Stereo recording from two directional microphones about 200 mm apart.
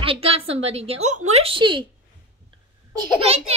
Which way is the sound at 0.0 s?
30° right (ahead or behind).